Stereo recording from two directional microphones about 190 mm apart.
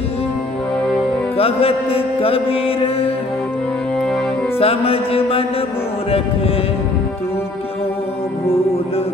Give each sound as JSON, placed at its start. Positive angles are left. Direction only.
{"t": 1.3, "sound": "music", "side_deg": 30}
{"t": 4.6, "sound": "music", "side_deg": 30}
{"t": 8.5, "sound": "music", "side_deg": 30}